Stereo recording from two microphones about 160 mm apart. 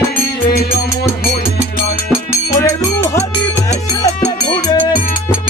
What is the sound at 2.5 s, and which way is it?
Music, 20° left (ahead or behind).